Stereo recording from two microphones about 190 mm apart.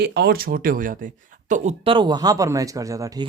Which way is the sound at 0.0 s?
60° right (ahead or behind).